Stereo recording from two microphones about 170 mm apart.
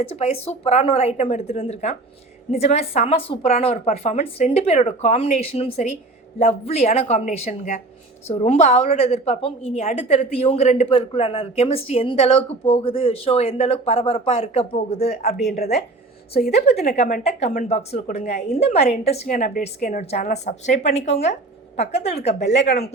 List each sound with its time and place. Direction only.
0.2 s speech: 35° left (ahead or behind)
16.6 s speech: 40° left (ahead or behind)
19.3 s a woman's voice: 50° left (ahead or behind)